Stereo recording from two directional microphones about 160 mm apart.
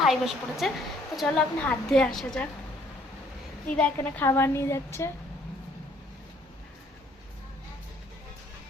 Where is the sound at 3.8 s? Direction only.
10° left (ahead or behind).